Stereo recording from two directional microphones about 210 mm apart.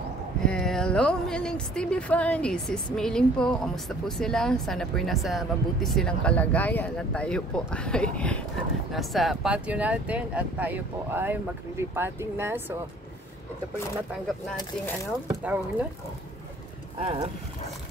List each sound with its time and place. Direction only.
0.5 s speech: 5° left (ahead or behind)
15.4 s speech: 5° right (ahead or behind)
17.0 s speech: 30° right (ahead or behind)